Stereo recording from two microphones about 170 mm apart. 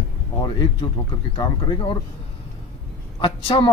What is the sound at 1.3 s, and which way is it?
Speech, 30° left (ahead or behind).